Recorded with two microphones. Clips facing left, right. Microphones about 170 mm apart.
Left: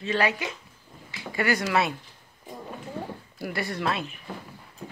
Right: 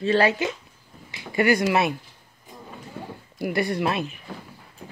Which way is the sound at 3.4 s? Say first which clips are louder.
Right 6 dB; 15° right (ahead or behind).